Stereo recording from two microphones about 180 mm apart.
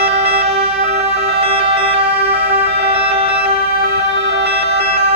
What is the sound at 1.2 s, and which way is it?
Music, 65° right (ahead or behind).